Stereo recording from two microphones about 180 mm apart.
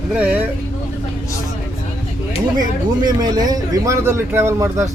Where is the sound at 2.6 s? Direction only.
20° right (ahead or behind).